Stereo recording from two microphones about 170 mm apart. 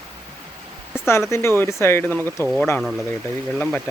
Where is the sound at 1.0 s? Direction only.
15° left (ahead or behind).